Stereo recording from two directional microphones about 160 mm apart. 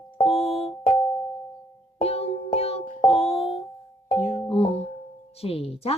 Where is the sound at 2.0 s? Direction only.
40° left (ahead or behind).